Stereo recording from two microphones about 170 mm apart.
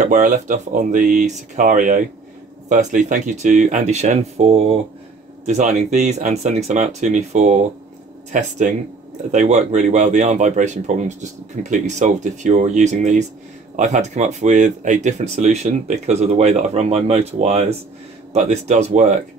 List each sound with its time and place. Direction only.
0.0 s speech: 50° right (ahead or behind)